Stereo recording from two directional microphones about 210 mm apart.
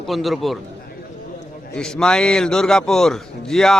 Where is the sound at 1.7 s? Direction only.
5° left (ahead or behind).